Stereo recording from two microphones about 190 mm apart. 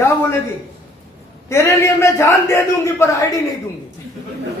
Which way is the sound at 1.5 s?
15° left (ahead or behind).